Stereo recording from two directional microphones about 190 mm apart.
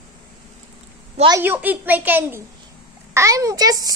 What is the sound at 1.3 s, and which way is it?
A child's voice, 10° right (ahead or behind).